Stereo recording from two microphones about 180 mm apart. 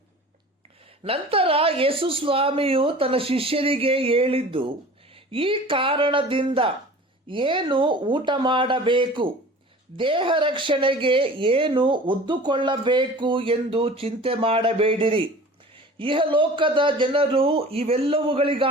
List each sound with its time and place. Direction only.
1.0 s speech: 30° right (ahead or behind)